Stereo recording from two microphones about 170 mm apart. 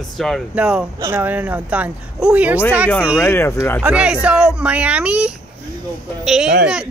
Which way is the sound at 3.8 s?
5° right (ahead or behind).